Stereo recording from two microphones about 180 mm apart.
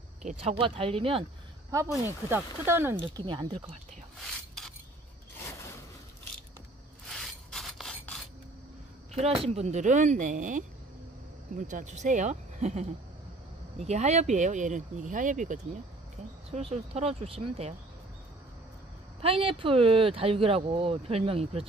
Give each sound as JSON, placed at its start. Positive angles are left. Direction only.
{"t": 0.2, "sound": "speech", "side_deg": -40}
{"t": 1.7, "sound": "speech", "side_deg": -20}
{"t": 3.0, "sound": "speech", "side_deg": -25}
{"t": 4.2, "sound": "a sound", "side_deg": 0}
{"t": 7.1, "sound": "rub", "side_deg": 0}
{"t": 9.1, "sound": "speech", "side_deg": -35}
{"t": 13.8, "sound": "speech", "side_deg": -40}
{"t": 19.2, "sound": "speech", "side_deg": -30}